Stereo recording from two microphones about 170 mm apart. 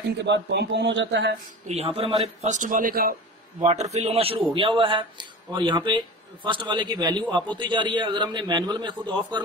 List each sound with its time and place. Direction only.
0.2 s speech: 90° right
1.7 s a man's voice: 35° right (ahead or behind); by 3.2 s 55° right (ahead or behind)
3.9 s a man's voice: 40° right (ahead or behind)